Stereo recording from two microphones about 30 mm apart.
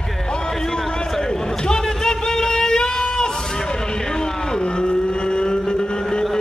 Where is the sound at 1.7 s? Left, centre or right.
Left.